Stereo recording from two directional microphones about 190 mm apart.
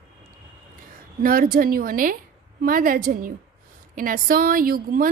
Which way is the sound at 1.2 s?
50° right (ahead or behind).